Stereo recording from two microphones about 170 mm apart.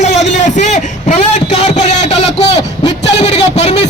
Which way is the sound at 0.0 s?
40° left (ahead or behind).